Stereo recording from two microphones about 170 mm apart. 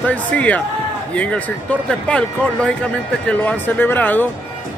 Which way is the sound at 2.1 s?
5° left (ahead or behind).